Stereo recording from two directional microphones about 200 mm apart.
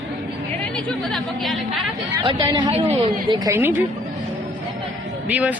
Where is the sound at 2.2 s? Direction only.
25° right (ahead or behind).